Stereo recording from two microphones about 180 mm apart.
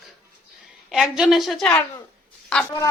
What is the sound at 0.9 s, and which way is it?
Speech, 5° right (ahead or behind).